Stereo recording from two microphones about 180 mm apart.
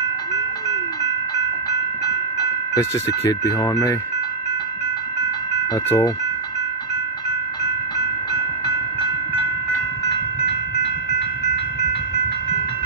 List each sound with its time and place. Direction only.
2.7 s speech: 20° left (ahead or behind)
5.9 s speech: 15° left (ahead or behind)